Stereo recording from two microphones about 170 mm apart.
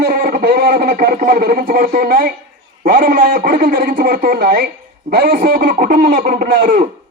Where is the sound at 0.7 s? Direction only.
50° right (ahead or behind).